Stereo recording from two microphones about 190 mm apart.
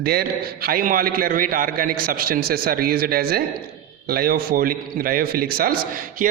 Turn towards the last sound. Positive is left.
turn(degrees=-50)  # may be behind; listen again after turning